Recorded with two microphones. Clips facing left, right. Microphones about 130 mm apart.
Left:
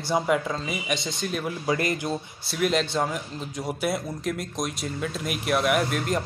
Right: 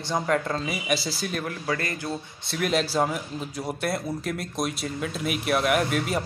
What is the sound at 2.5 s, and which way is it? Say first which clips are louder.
Speech: left 1 dB; centre (ahead or behind).